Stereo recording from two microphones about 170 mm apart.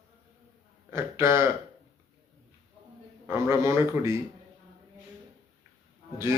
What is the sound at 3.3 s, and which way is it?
Speech, 15° right (ahead or behind).